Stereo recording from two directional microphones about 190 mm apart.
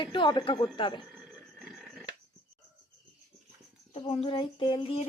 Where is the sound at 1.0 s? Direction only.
5° right (ahead or behind).